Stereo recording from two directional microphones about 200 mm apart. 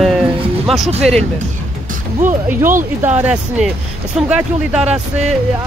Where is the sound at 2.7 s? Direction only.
40° right (ahead or behind).